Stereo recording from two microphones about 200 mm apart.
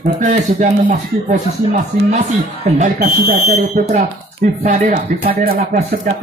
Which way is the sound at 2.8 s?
40° right (ahead or behind).